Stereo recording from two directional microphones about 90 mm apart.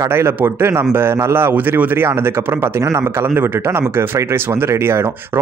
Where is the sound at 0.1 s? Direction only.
25° right (ahead or behind).